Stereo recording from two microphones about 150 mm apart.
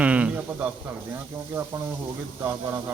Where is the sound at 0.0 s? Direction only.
10° right (ahead or behind).